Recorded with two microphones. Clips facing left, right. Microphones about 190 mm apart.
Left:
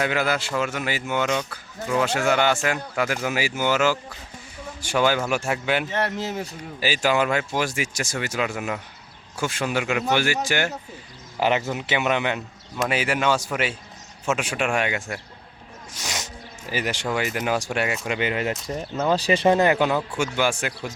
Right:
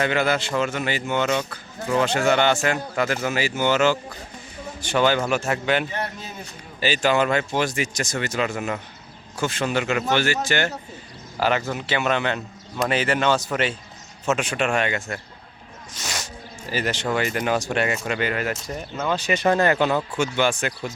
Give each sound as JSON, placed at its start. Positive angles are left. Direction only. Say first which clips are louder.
{"t": 0.0, "sound": "speech", "louder": "right 2 dB", "side_deg": 5}
{"t": 5.9, "sound": "speech", "louder": "left 5 dB", "side_deg": 80}
{"t": 6.7, "sound": "speech", "louder": "right 1 dB", "side_deg": 10}
{"t": 18.7, "sound": "speech", "louder": "left 3 dB", "side_deg": 35}
{"t": 19.5, "sound": "speech", "louder": "even", "side_deg": 15}